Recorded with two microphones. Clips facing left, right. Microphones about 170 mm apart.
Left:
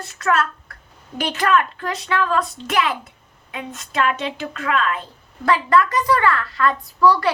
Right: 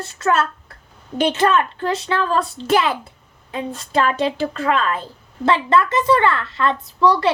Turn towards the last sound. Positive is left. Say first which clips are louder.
# even
turn(degrees=-25)  # may be behind; listen again after turning